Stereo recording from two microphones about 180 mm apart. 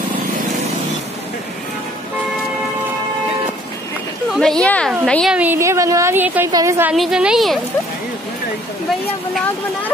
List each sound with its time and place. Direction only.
4.3 s a woman's voice: 5° left (ahead or behind)